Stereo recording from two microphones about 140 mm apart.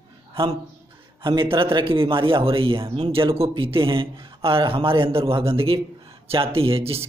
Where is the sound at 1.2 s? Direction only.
35° right (ahead or behind).